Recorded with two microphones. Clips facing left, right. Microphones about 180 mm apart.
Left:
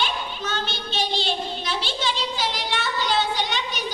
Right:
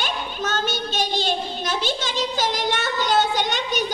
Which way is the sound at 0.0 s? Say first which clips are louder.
Right 1 dB; 45° right (ahead or behind).